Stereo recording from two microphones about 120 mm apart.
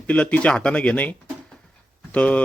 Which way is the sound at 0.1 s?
10° left (ahead or behind).